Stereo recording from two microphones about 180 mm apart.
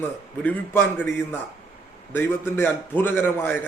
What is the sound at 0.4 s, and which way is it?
A man's voice, 10° left (ahead or behind).